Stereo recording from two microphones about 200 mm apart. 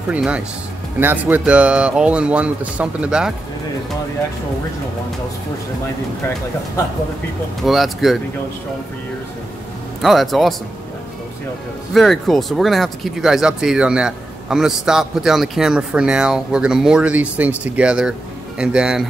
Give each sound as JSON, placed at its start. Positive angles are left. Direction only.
{"t": 0.1, "sound": "speech", "side_deg": -5}
{"t": 7.6, "sound": "speech", "side_deg": 0}
{"t": 10.0, "sound": "speech", "side_deg": 0}
{"t": 11.9, "sound": "speech", "side_deg": 0}